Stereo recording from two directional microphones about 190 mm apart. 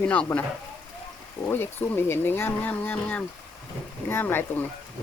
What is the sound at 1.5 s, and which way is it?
Speech, 10° left (ahead or behind).